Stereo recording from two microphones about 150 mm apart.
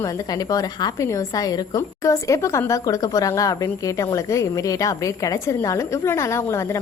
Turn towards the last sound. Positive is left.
turn(degrees=20)  # may be behind; listen again after turning